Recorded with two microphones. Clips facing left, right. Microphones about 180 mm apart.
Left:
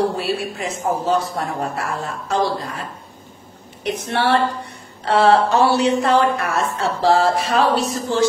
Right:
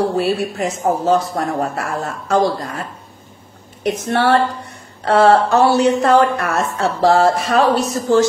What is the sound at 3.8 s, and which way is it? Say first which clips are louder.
A woman's voice: right 4 dB; 45° right (ahead or behind).